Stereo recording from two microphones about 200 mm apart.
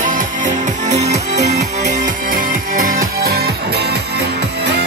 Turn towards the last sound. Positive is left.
turn(degrees=-50)  # may be behind; listen again after turning